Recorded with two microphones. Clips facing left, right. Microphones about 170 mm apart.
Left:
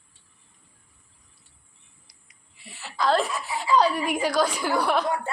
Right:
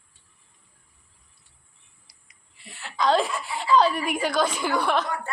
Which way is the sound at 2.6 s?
5° left (ahead or behind).